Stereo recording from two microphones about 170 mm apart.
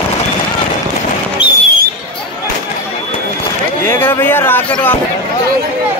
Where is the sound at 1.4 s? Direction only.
30° left (ahead or behind).